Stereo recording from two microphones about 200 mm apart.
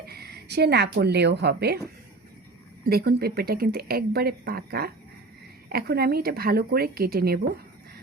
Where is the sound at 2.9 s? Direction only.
50° right (ahead or behind).